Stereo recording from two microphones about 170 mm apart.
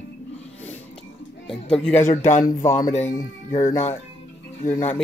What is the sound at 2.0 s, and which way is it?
Speech, 45° left (ahead or behind).